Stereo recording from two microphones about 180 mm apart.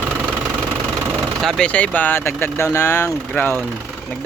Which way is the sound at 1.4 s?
5° left (ahead or behind).